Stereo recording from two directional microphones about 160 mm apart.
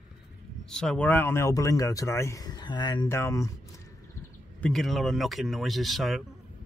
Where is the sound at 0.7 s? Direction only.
5° left (ahead or behind); by 3.1 s 30° left (ahead or behind).